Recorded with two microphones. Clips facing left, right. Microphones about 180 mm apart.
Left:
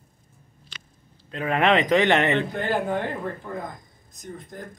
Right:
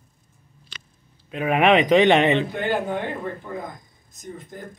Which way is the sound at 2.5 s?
Centre (ahead or behind).